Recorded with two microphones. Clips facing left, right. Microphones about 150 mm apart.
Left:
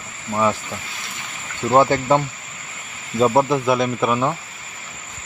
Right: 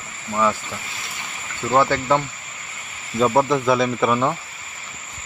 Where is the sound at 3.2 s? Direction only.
5° left (ahead or behind).